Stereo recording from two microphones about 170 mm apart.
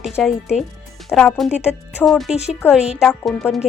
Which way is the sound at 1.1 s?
Centre (ahead or behind).